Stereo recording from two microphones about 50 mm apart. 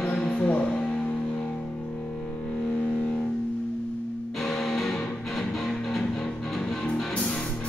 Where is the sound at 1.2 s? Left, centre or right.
Left.